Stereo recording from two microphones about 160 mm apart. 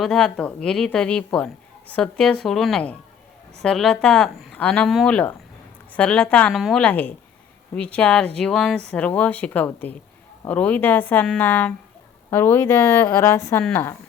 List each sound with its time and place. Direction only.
0.0 s speech: 5° left (ahead or behind)